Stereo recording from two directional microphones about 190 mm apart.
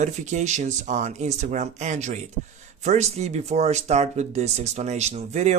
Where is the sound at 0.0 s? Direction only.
40° right (ahead or behind).